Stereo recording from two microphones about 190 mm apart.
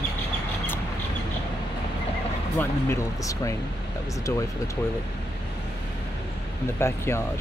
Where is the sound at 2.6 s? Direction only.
15° left (ahead or behind).